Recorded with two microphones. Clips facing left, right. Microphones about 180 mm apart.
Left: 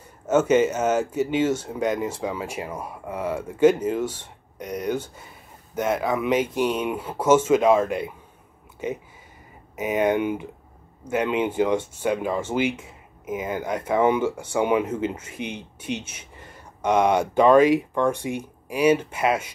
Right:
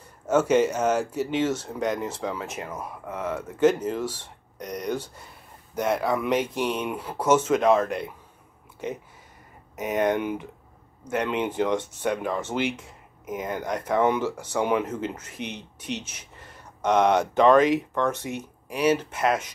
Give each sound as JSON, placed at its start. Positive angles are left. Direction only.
{"t": 0.3, "sound": "speech", "side_deg": 5}
{"t": 8.7, "sound": "a sound", "side_deg": 5}
{"t": 9.8, "sound": "speech", "side_deg": 5}